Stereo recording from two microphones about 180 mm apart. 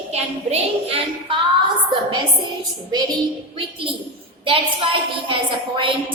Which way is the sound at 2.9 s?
20° right (ahead or behind).